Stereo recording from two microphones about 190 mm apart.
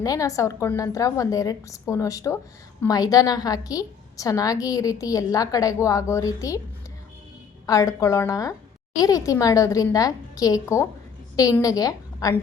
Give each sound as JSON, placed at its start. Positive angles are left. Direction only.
{"t": 0.0, "sound": "a woman's voice", "side_deg": 15}
{"t": 7.7, "sound": "a woman's voice", "side_deg": 15}